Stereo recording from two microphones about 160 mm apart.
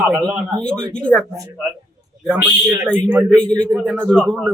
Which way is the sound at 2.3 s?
10° right (ahead or behind).